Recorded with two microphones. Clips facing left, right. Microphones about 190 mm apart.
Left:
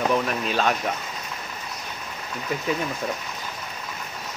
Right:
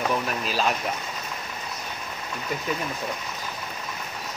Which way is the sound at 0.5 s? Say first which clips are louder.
Left 2 dB; centre (ahead or behind).